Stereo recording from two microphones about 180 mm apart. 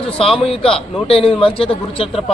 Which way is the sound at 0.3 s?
30° left (ahead or behind).